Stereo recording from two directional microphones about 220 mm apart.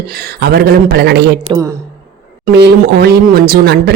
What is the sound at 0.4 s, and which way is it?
Speech, 45° right (ahead or behind).